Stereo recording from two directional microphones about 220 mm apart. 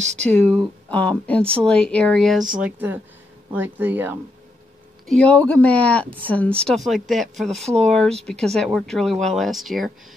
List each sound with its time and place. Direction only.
0.0 s speech: 30° right (ahead or behind)
0.3 s speech: 5° left (ahead or behind); by 4.2 s 10° right (ahead or behind)
5.0 s speech: 5° left (ahead or behind)